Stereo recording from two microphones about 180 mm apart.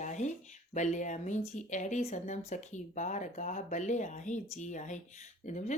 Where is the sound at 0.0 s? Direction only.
40° left (ahead or behind).